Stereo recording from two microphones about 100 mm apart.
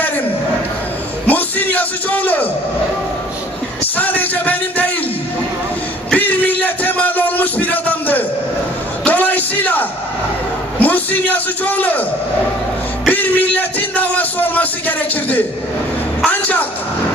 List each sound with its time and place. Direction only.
1.2 s music: 15° left (ahead or behind)
3.8 s a sound: 15° left (ahead or behind)
6.1 s music: 15° left (ahead or behind)
9.0 s a sound: 15° left (ahead or behind)
10.8 s a man's voice: 15° left (ahead or behind)
13.1 s speech: 15° left (ahead or behind)
16.3 s music: 15° left (ahead or behind)